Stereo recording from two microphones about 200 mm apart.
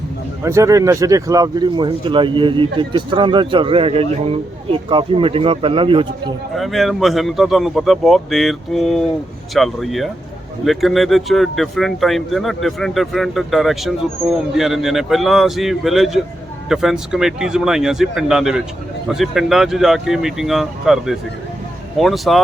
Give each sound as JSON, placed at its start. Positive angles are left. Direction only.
{"t": 0.4, "sound": "speech", "side_deg": -15}
{"t": 6.6, "sound": "speech", "side_deg": 0}